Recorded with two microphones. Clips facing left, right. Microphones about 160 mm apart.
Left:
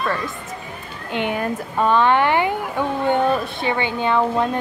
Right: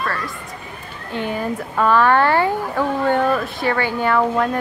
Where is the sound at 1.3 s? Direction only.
20° left (ahead or behind).